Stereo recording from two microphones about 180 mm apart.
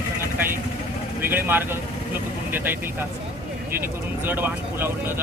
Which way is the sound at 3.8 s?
10° right (ahead or behind).